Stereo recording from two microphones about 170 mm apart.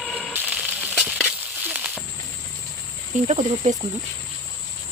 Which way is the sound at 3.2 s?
40° right (ahead or behind).